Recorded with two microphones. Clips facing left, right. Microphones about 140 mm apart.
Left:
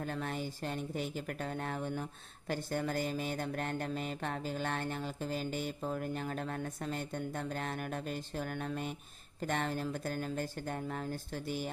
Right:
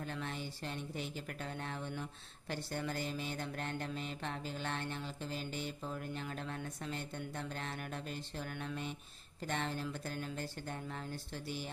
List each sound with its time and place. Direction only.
0.0 s speech: 45° left (ahead or behind)